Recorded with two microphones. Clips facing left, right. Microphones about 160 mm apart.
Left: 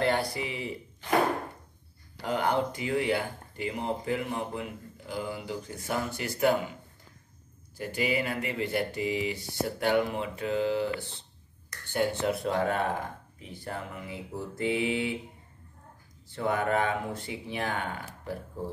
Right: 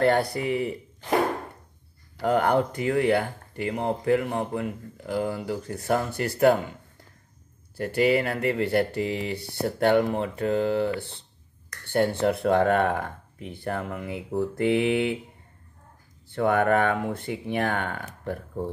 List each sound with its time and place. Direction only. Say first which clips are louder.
0.0 s speech: right 6 dB; 50° right (ahead or behind)
2.2 s speech: right 6 dB; 55° right (ahead or behind)
7.7 s speech: right 8 dB; 60° right (ahead or behind)
16.3 s speech: right 7 dB; 60° right (ahead or behind)